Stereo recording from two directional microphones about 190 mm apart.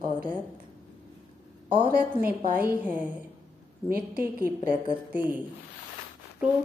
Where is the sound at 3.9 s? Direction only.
50° right (ahead or behind).